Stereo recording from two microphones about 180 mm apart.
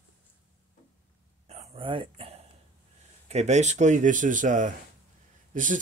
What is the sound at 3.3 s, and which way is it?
Speech, 40° right (ahead or behind).